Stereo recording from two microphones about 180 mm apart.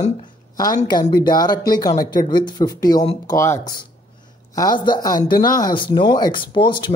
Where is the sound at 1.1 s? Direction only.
25° left (ahead or behind).